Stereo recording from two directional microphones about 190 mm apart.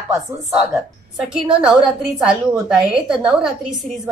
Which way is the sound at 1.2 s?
5° right (ahead or behind).